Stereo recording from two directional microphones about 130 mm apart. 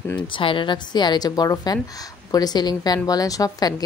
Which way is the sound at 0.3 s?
40° left (ahead or behind).